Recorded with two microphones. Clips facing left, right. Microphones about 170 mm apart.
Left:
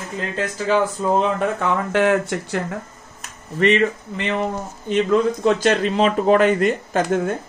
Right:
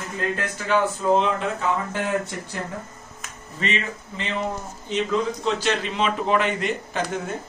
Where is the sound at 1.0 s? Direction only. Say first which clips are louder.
Even; 30° left (ahead or behind).